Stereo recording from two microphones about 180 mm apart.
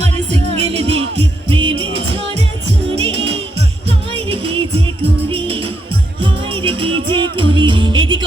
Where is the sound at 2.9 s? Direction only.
35° right (ahead or behind).